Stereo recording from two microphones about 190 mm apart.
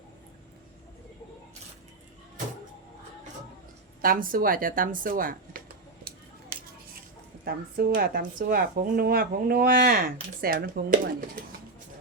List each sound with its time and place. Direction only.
4.0 s speech: 50° right (ahead or behind)
7.4 s speech: 50° right (ahead or behind)